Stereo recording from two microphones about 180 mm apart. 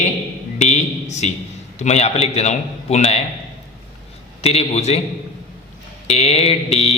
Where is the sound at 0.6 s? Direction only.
40° left (ahead or behind).